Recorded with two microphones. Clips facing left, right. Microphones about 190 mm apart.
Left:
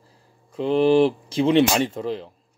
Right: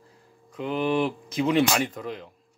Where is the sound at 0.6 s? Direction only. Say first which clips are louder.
Left 8 dB; 30° left (ahead or behind).